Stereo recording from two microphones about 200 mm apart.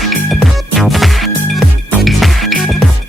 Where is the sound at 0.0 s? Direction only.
Centre (ahead or behind).